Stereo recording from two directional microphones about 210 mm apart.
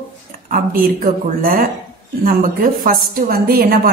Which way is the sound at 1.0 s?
45° right (ahead or behind).